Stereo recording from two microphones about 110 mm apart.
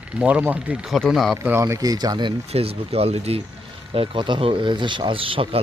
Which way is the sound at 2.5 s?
65° right (ahead or behind).